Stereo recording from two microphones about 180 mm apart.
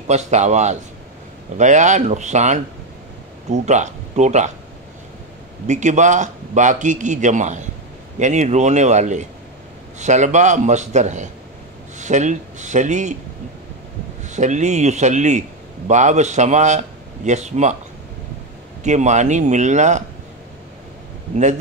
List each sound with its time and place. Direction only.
0.1 s a man's voice: 40° right (ahead or behind)
5.7 s a man's voice: 40° right (ahead or behind)
14.2 s a man's voice: 40° right (ahead or behind)
18.8 s a man's voice: 40° right (ahead or behind)